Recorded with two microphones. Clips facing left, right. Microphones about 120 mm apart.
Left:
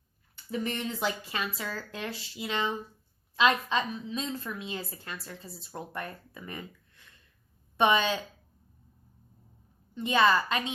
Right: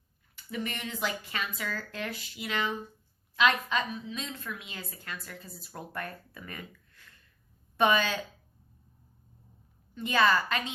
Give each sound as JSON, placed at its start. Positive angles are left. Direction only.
{"t": 0.5, "sound": "a woman's voice", "side_deg": 35}
{"t": 9.9, "sound": "a woman's voice", "side_deg": 20}